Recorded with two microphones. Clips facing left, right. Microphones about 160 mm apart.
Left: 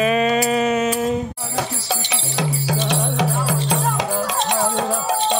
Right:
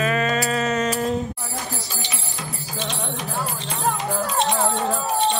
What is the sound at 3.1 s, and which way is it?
Music, 80° left.